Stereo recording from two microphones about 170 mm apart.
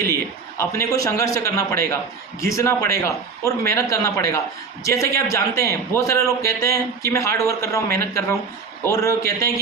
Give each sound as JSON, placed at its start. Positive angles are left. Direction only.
{"t": 0.5, "sound": "a man's voice", "side_deg": 15}